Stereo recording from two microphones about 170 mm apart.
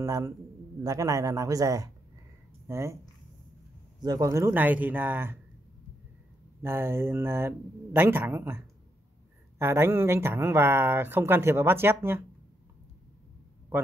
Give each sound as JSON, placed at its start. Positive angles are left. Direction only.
{"t": 0.0, "sound": "speech", "side_deg": -20}
{"t": 4.0, "sound": "speech", "side_deg": -20}
{"t": 6.6, "sound": "speech", "side_deg": -15}